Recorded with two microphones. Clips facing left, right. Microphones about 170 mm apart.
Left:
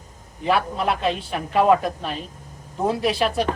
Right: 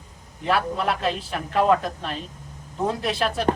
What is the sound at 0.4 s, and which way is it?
A woman's voice, centre (ahead or behind).